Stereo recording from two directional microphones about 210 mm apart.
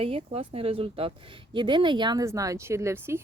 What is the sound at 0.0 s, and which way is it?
A woman's voice, 25° right (ahead or behind).